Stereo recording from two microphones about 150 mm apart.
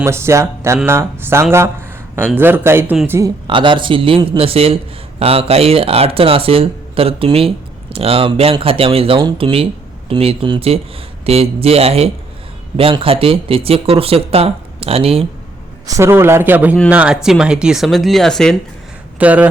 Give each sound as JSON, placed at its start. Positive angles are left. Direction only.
{"t": 0.0, "sound": "speech", "side_deg": -15}
{"t": 3.2, "sound": "speech", "side_deg": -30}
{"t": 15.9, "sound": "speech", "side_deg": -20}
{"t": 19.2, "sound": "speech", "side_deg": -10}